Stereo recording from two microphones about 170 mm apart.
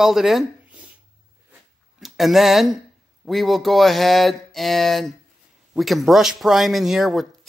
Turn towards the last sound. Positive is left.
turn(degrees=0)  # may be behind; listen again after turning